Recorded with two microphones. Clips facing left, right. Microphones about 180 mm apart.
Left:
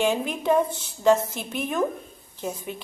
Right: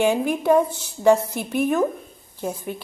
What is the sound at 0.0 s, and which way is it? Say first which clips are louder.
Speech: right 4 dB; 10° right (ahead or behind).